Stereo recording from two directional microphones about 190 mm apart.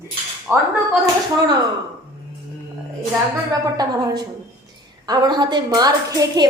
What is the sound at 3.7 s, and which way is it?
A woman's voice, 20° right (ahead or behind).